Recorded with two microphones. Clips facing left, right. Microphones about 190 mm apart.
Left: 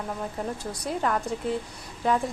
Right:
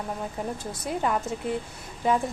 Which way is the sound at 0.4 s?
5° right (ahead or behind).